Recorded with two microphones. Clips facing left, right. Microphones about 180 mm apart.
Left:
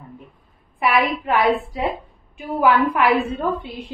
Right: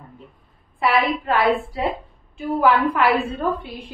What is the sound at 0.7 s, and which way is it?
A woman's voice, 20° left (ahead or behind).